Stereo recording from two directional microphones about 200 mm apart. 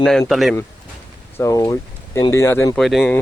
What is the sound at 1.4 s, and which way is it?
Speech, 15° left (ahead or behind).